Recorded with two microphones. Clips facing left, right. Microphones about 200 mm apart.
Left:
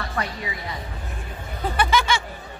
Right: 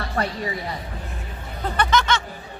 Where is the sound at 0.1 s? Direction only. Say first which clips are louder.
Right 4 dB; 45° right (ahead or behind).